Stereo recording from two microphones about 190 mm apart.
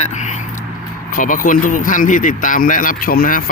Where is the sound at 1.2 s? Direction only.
45° left (ahead or behind).